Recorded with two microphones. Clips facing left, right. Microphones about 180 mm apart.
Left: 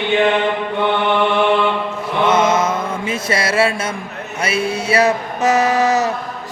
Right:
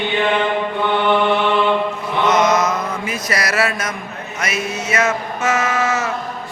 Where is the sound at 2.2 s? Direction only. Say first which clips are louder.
Left 1 dB; 30° left (ahead or behind).